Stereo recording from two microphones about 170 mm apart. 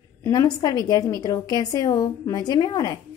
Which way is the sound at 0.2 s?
20° left (ahead or behind).